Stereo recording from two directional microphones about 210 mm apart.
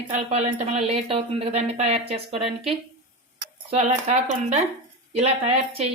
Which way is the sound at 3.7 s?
35° right (ahead or behind).